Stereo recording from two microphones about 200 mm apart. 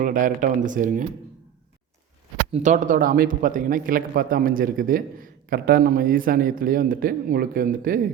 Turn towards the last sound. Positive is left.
turn(degrees=-45)  # may be behind; listen again after turning